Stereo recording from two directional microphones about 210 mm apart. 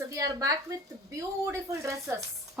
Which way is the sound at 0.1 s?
15° right (ahead or behind).